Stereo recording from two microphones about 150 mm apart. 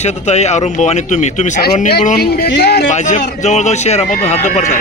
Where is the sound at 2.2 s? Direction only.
90° left.